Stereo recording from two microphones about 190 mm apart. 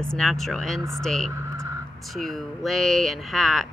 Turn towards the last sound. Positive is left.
turn(degrees=0)  # may be behind; listen again after turning